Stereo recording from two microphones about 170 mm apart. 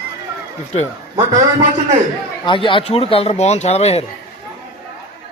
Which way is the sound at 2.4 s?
30° left (ahead or behind).